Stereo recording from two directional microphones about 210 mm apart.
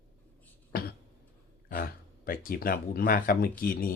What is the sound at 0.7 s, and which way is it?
Cough, 50° left (ahead or behind).